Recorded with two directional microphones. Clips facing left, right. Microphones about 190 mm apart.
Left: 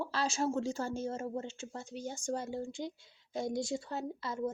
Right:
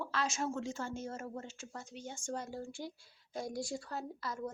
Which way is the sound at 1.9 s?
40° left (ahead or behind).